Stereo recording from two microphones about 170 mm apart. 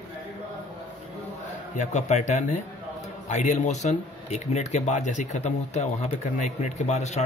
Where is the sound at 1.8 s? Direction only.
45° left (ahead or behind).